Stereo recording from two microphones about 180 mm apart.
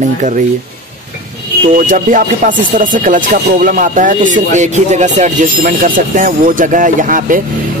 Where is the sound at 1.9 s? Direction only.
45° right (ahead or behind).